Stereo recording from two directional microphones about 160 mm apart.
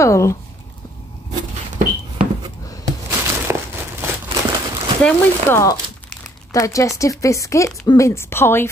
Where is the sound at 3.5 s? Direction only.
15° right (ahead or behind).